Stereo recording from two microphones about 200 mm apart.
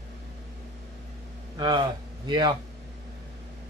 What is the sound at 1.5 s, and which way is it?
Speech, 20° right (ahead or behind).